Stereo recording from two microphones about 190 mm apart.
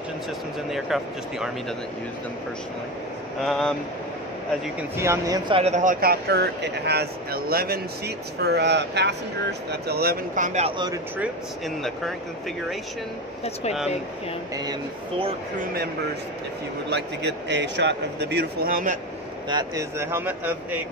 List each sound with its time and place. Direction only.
0.7 s speech: centre (ahead or behind)
3.4 s speech: centre (ahead or behind)
4.9 s speech: 15° right (ahead or behind)
5.5 s speech: 35° right (ahead or behind)
11.1 s speech: centre (ahead or behind)
14.5 s speech: 20° right (ahead or behind)
16.9 s speech: 65° right (ahead or behind); by 18.9 s 45° right (ahead or behind)
19.5 s speech: 15° right (ahead or behind)